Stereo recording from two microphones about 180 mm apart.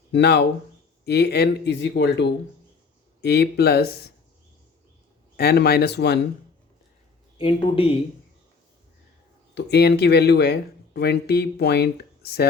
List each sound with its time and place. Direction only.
0.1 s speech: 65° left (ahead or behind)
5.4 s speech: 60° left (ahead or behind)
7.3 s speech: 30° left (ahead or behind)
9.6 s speech: 65° left (ahead or behind)